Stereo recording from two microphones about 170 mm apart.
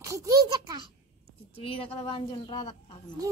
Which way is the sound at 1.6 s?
35° left (ahead or behind).